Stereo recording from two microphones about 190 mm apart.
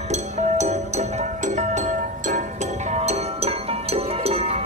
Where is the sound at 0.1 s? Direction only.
35° right (ahead or behind).